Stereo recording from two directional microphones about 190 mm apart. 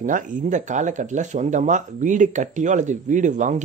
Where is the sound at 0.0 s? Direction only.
40° right (ahead or behind).